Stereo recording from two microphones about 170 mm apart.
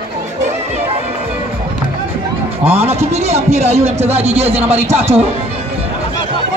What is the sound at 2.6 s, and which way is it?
Speech, 35° right (ahead or behind).